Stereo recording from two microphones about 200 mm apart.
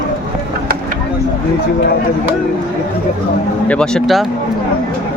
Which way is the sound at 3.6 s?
5° left (ahead or behind).